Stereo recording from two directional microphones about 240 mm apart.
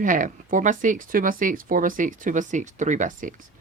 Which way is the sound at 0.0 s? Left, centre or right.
Right.